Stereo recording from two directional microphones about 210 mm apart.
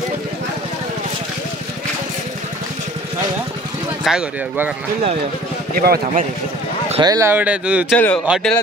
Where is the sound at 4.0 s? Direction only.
5° right (ahead or behind).